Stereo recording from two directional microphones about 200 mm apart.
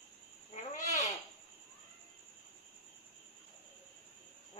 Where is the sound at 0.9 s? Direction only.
35° left (ahead or behind).